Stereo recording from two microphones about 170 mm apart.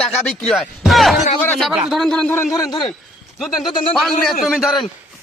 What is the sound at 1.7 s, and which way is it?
Speech, centre (ahead or behind).